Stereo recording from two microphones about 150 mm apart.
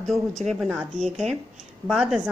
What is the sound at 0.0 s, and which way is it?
A woman's voice, centre (ahead or behind).